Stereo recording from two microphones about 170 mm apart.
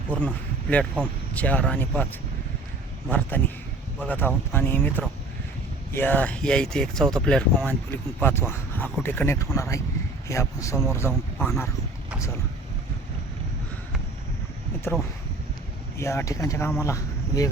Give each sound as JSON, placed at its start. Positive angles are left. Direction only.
{"t": 0.1, "sound": "speech", "side_deg": 10}
{"t": 3.1, "sound": "speech", "side_deg": 10}
{"t": 14.9, "sound": "speech", "side_deg": 15}